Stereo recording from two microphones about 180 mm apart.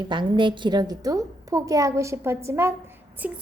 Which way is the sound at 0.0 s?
25° right (ahead or behind).